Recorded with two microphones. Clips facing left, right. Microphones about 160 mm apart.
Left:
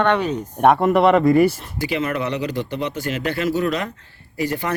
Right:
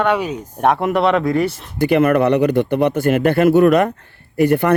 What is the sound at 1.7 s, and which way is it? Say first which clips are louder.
Speech: right 9 dB; 55° right (ahead or behind).